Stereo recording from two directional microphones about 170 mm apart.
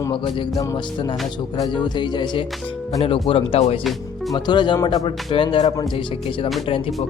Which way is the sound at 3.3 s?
35° left (ahead or behind).